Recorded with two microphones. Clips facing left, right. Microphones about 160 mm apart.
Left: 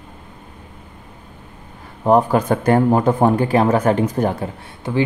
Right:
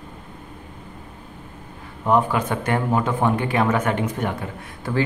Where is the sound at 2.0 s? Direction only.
40° left (ahead or behind).